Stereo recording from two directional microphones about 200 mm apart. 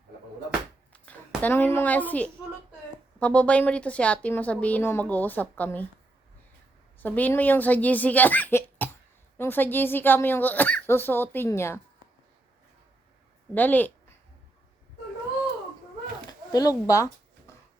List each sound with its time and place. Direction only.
0.9 s a sound: 5° left (ahead or behind)
1.4 s a woman's voice: 10° left (ahead or behind)
7.0 s a woman's voice: 10° left (ahead or behind)
13.5 s a woman's voice: 10° left (ahead or behind)
16.5 s speech: 20° left (ahead or behind)